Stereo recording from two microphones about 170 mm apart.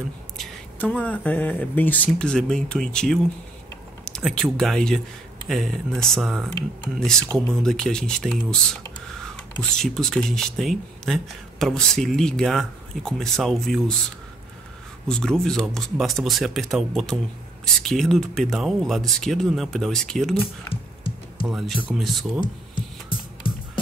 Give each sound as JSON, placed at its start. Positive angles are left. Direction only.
{"t": 0.4, "sound": "speech", "side_deg": 10}
{"t": 9.6, "sound": "speech", "side_deg": 5}
{"t": 15.0, "sound": "speech", "side_deg": 5}
{"t": 20.7, "sound": "music", "side_deg": 30}
{"t": 21.5, "sound": "speech", "side_deg": 0}